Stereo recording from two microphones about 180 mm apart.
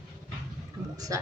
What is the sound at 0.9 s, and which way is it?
Speech, 20° right (ahead or behind).